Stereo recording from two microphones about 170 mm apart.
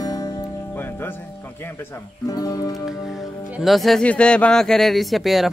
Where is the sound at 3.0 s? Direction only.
Centre (ahead or behind).